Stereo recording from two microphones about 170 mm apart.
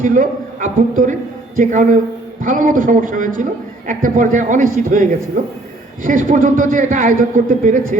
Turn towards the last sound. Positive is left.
turn(degrees=-50)  # may be behind; listen again after turning